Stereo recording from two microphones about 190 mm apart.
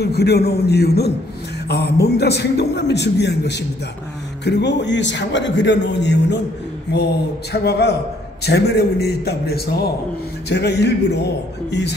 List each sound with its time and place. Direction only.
0.0 s a man's voice: 60° left (ahead or behind)
7.6 s a man's voice: 60° left (ahead or behind)